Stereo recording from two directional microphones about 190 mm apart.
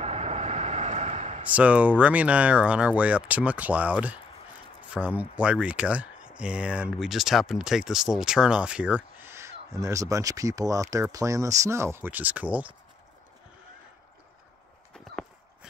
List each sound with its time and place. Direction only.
0.0 s vehicle: 35° right (ahead or behind)
1.5 s speech: 5° right (ahead or behind)